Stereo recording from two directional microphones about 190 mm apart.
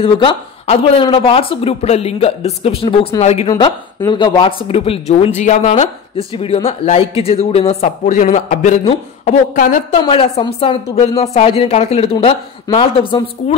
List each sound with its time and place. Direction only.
0.0 s speech: 30° left (ahead or behind)
3.4 s speech: 20° left (ahead or behind); by 9.8 s 45° left (ahead or behind)
9.9 s speech: 25° left (ahead or behind)